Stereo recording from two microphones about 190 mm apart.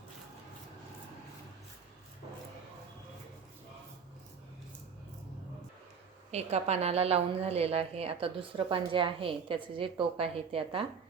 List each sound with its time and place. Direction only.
6.3 s a woman's voice: 35° right (ahead or behind)